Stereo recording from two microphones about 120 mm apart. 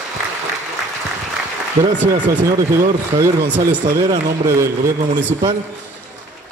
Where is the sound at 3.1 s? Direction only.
30° right (ahead or behind).